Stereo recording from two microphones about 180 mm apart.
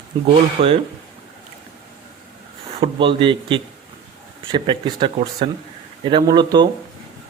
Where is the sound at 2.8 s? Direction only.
30° right (ahead or behind).